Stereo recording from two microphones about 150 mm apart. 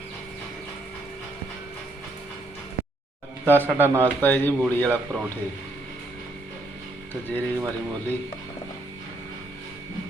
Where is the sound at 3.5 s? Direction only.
15° right (ahead or behind).